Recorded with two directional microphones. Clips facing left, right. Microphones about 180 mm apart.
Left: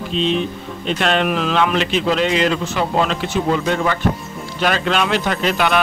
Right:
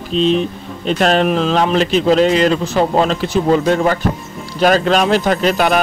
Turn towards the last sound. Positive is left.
turn(degrees=-40)  # may be behind; listen again after turning